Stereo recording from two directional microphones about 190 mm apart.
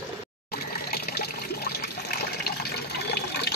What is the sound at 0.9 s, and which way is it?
Water, 55° left (ahead or behind).